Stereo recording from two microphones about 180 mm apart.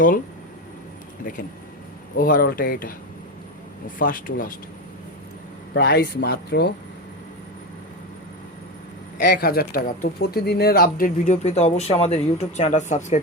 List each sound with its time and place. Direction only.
2.1 s speech: 50° left (ahead or behind)
5.7 s speech: 65° left (ahead or behind)
9.2 s speech: 60° left (ahead or behind)
11.3 s speech: 40° left (ahead or behind)